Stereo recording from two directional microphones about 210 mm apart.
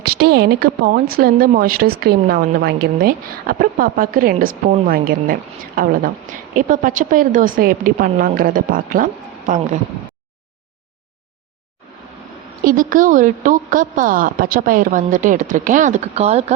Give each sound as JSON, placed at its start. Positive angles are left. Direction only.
{"t": 0.0, "sound": "a woman's voice", "side_deg": -50}
{"t": 12.6, "sound": "a woman's voice", "side_deg": -40}